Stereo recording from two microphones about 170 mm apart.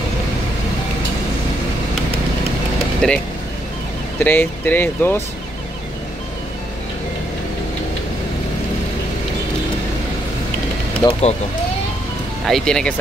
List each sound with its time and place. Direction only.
3.0 s speech: 5° left (ahead or behind)
4.2 s speech: 10° left (ahead or behind)
11.0 s speech: 20° left (ahead or behind)
12.4 s speech: centre (ahead or behind)